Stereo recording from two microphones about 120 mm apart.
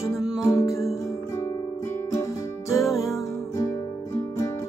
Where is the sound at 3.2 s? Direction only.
25° left (ahead or behind).